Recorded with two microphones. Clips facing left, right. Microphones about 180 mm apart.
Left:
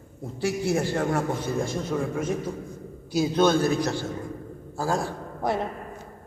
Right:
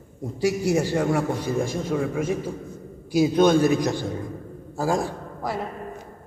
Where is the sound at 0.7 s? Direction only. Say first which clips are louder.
Right 2 dB; 10° right (ahead or behind).